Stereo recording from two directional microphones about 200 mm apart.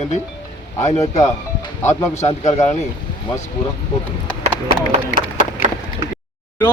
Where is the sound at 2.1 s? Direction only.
35° left (ahead or behind).